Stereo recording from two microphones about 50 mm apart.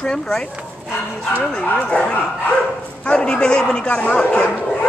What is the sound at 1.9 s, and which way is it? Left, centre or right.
A man's voice, left.